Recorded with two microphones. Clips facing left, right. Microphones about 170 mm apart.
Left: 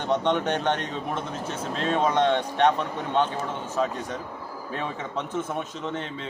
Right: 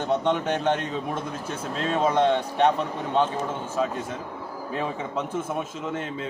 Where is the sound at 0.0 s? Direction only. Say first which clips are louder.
Even; 5° right (ahead or behind).